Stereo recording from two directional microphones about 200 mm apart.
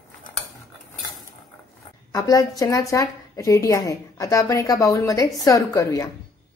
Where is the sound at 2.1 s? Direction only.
15° left (ahead or behind).